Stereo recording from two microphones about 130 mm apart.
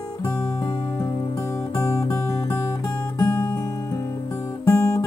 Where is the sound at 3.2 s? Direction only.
20° left (ahead or behind).